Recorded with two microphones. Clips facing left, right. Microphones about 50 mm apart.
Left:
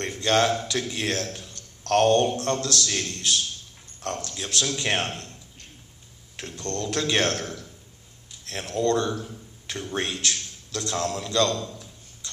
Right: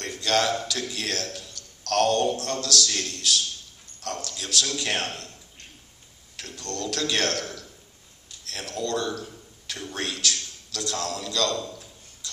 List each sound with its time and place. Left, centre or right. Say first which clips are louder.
0.0 s a man's voice: left 2 dB; left
6.3 s a man's voice: left 3 dB; left